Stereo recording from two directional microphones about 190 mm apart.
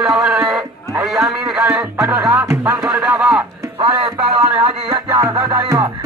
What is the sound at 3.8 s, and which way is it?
Music, 25° right (ahead or behind).